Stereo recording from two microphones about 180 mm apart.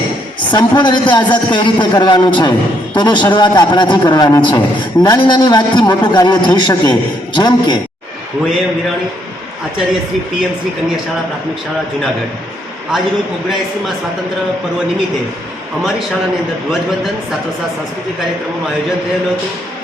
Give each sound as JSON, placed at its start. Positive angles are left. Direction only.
{"t": 0.5, "sound": "a man's voice", "side_deg": 25}